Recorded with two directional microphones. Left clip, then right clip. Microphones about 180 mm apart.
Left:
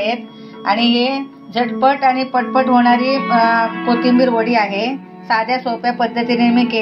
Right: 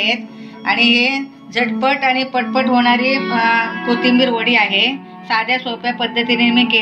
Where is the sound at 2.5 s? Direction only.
30° left (ahead or behind).